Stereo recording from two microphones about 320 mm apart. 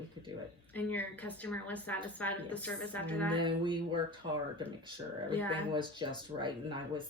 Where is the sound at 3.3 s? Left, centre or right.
Centre.